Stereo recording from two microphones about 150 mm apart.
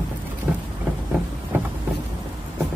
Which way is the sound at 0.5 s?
10° right (ahead or behind).